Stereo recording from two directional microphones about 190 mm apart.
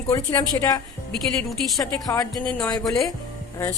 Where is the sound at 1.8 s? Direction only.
20° left (ahead or behind).